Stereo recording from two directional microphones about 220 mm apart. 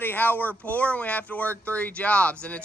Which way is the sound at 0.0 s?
10° left (ahead or behind).